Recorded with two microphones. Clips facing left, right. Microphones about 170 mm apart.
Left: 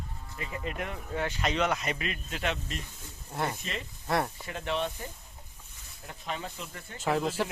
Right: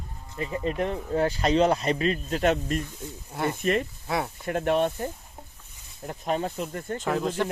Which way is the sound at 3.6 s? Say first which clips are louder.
Right 14 dB; 55° right (ahead or behind).